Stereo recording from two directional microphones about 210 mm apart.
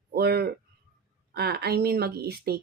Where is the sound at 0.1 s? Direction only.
50° right (ahead or behind).